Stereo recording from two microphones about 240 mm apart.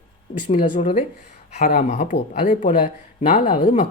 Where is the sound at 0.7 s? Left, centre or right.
Left.